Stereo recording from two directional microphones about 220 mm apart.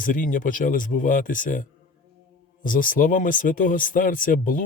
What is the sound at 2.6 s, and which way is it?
Speech, 40° left (ahead or behind).